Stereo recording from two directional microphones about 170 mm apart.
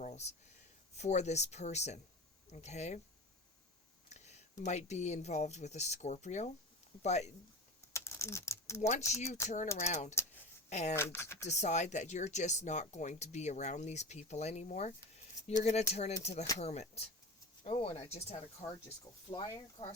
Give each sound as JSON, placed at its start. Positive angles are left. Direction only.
{"t": 0.0, "sound": "a sound", "side_deg": 40}
{"t": 0.9, "sound": "speech", "side_deg": 40}
{"t": 4.1, "sound": "speech", "side_deg": 40}
{"t": 7.9, "sound": "typing", "side_deg": 15}
{"t": 8.8, "sound": "speech", "side_deg": 40}
{"t": 10.9, "sound": "speech", "side_deg": 15}
{"t": 11.4, "sound": "speech", "side_deg": 40}
{"t": 19.3, "sound": "speech", "side_deg": 25}